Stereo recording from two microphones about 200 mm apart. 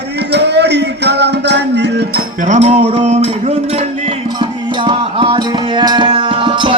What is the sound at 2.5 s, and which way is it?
Music, 35° right (ahead or behind).